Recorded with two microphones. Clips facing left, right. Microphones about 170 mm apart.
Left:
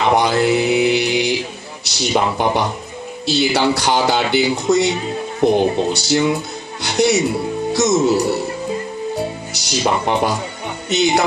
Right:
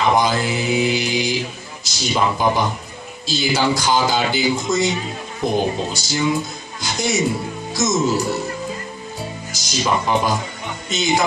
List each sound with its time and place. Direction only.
0.1 s speech: 65° left (ahead or behind)
9.5 s speech: 65° left (ahead or behind)